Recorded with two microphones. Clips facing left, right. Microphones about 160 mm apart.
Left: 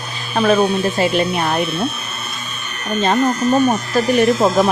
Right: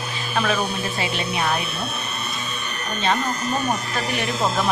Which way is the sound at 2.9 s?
45° left (ahead or behind).